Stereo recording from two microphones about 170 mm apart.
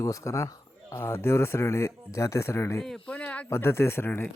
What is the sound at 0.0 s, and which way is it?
Speech, 20° left (ahead or behind).